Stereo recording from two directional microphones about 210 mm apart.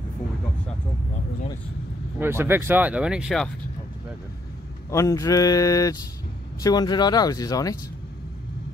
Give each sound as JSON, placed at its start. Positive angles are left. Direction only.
{"t": 2.1, "sound": "speech", "side_deg": -10}
{"t": 4.9, "sound": "speech", "side_deg": 15}